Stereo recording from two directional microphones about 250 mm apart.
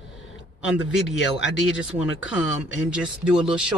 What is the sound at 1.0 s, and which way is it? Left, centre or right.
Speech, left.